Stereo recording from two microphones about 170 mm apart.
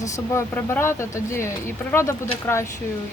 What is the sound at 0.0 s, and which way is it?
Speech, 15° left (ahead or behind).